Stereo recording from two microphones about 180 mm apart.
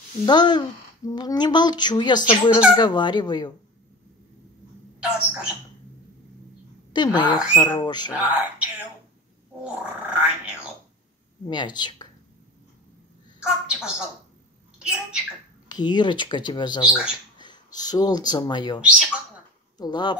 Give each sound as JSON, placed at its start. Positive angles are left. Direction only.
{"t": 0.2, "sound": "speech", "side_deg": 25}
{"t": 6.9, "sound": "speech", "side_deg": 25}
{"t": 8.1, "sound": "speech", "side_deg": -5}
{"t": 10.0, "sound": "a sound", "side_deg": -10}
{"t": 11.4, "sound": "speech", "side_deg": 25}
{"t": 13.4, "sound": "a woman's voice", "side_deg": -5}
{"t": 15.7, "sound": "speech", "side_deg": 25}
{"t": 16.8, "sound": "speech", "side_deg": -5}
{"t": 17.7, "sound": "speech", "side_deg": 20}
{"t": 18.8, "sound": "speech", "side_deg": -5}
{"t": 19.8, "sound": "speech", "side_deg": 25}